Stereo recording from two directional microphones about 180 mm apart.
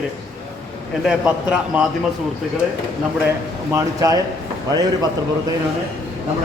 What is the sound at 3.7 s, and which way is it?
Speech, 15° right (ahead or behind).